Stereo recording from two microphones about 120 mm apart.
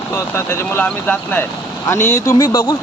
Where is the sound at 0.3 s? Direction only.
20° left (ahead or behind).